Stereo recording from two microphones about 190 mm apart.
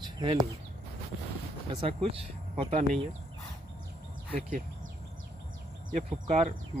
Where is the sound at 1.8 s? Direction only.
30° right (ahead or behind).